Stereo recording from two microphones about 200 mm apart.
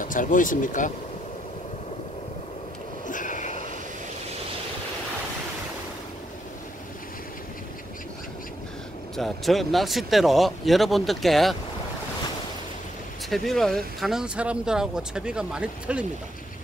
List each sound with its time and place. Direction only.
0.0 s speech: 40° left (ahead or behind)
3.1 s vehicle: 40° left (ahead or behind)
9.1 s speech: centre (ahead or behind)
13.3 s speech: centre (ahead or behind)